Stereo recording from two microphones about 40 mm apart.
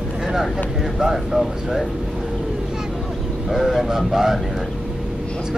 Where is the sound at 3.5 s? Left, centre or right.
Centre.